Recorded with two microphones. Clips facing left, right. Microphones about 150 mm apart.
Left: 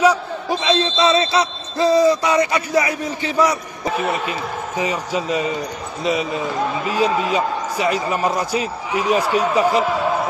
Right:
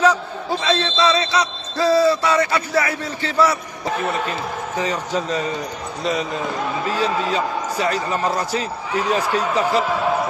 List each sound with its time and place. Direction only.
0.0 s a man's voice: 10° left (ahead or behind)